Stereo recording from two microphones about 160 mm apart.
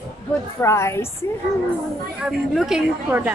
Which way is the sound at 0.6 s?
15° left (ahead or behind).